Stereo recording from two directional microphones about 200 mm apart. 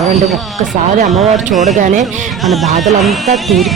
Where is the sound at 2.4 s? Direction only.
Centre (ahead or behind).